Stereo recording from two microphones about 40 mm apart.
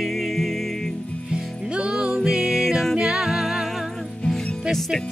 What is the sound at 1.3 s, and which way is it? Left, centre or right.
Music, right.